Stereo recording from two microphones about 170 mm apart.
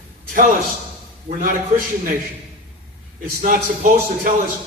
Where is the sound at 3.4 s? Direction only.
50° right (ahead or behind).